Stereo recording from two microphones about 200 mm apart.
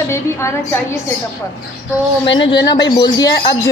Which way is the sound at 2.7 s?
20° left (ahead or behind).